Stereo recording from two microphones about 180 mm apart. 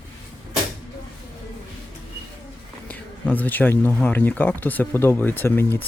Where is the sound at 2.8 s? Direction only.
10° left (ahead or behind).